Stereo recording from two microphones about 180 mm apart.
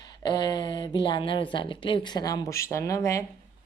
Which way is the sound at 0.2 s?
25° left (ahead or behind).